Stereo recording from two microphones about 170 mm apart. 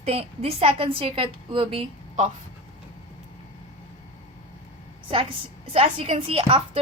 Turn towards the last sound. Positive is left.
turn(degrees=-35)  # may be behind; listen again after turning